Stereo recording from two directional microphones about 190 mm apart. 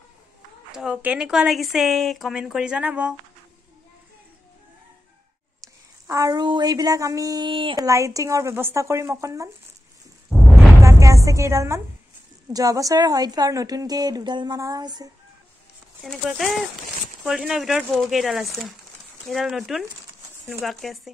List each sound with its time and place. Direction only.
0.7 s speech: 5° right (ahead or behind)
6.0 s speech: 20° right (ahead or behind)
10.3 s music: centre (ahead or behind)
10.8 s a sound: 15° right (ahead or behind)
11.2 s a woman's voice: 15° right (ahead or behind)
16.0 s speech: centre (ahead or behind)